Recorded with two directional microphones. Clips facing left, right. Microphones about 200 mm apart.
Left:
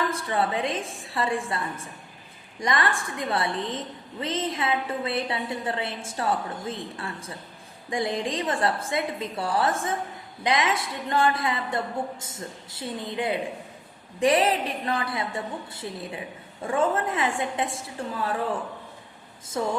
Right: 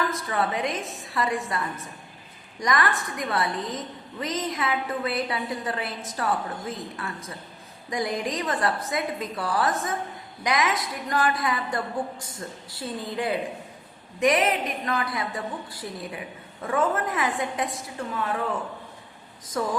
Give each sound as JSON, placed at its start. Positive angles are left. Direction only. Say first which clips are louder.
{"t": 0.1, "sound": "a woman's voice", "louder": "left 1 dB", "side_deg": 30}
{"t": 19.6, "sound": "a woman's voice", "louder": "even", "side_deg": 25}